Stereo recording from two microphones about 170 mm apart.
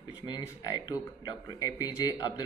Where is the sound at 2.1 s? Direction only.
25° left (ahead or behind).